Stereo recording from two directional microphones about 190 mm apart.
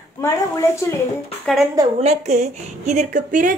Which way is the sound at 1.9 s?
35° right (ahead or behind).